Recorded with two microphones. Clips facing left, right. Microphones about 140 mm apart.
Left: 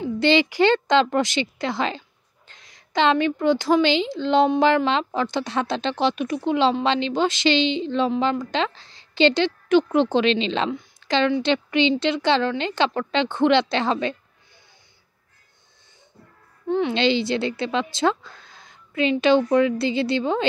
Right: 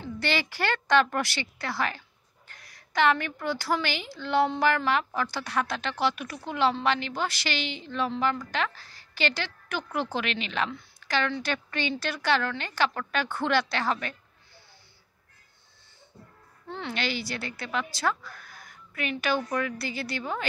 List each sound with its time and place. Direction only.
0.0 s speech: 20° left (ahead or behind)
16.6 s speech: 20° left (ahead or behind)